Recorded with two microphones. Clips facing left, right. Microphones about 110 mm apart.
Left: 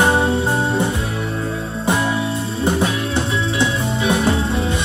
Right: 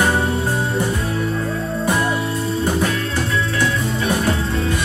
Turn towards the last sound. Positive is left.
turn(degrees=25)  # may be behind; listen again after turning